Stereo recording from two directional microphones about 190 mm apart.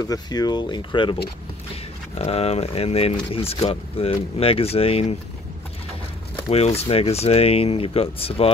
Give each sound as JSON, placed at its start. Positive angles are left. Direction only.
{"t": 0.0, "sound": "speech", "side_deg": 20}
{"t": 2.1, "sound": "speech", "side_deg": 30}
{"t": 6.5, "sound": "speech", "side_deg": 30}